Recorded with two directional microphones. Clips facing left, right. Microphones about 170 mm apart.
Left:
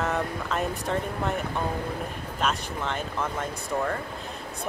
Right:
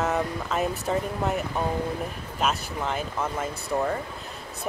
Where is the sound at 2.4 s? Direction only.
5° right (ahead or behind).